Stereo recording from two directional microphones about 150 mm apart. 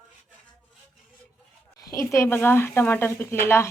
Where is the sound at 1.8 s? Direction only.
20° left (ahead or behind).